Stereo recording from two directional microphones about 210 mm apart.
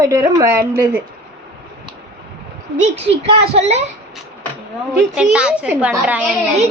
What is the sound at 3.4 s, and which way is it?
Speech, 30° right (ahead or behind).